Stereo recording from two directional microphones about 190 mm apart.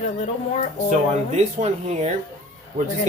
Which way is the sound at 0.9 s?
40° right (ahead or behind).